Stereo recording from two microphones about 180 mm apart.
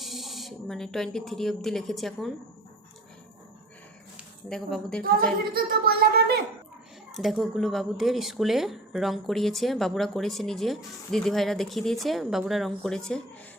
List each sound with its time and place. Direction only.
0.0 s speech: centre (ahead or behind)
4.4 s speech: 5° left (ahead or behind)
6.0 s a child's voice: 60° right (ahead or behind)
7.1 s speech: centre (ahead or behind)